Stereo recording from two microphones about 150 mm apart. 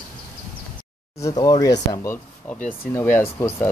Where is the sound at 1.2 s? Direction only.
25° left (ahead or behind).